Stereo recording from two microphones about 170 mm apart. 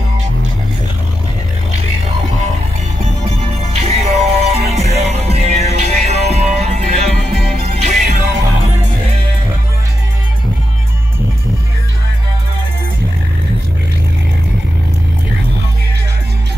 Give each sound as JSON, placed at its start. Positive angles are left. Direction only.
{"t": 3.8, "sound": "music", "side_deg": -40}